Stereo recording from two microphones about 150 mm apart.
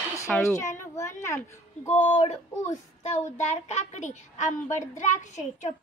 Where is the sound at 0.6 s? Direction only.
20° left (ahead or behind).